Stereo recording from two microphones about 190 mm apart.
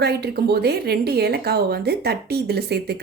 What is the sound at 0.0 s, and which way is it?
Speech, 60° right (ahead or behind).